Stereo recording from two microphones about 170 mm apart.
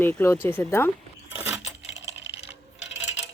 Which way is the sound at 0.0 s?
10° left (ahead or behind).